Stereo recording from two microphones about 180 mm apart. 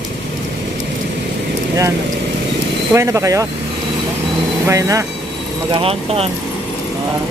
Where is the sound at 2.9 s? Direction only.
15° right (ahead or behind).